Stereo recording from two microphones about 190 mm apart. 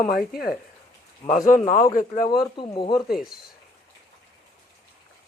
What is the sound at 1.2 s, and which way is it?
Speech, 40° left (ahead or behind).